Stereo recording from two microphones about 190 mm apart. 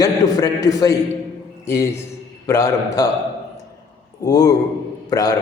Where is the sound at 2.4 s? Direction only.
15° left (ahead or behind).